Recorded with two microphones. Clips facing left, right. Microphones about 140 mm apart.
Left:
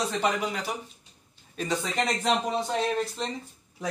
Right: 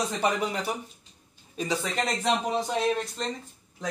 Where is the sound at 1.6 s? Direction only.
10° right (ahead or behind).